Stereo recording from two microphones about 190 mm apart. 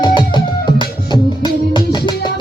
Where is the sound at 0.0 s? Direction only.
25° left (ahead or behind).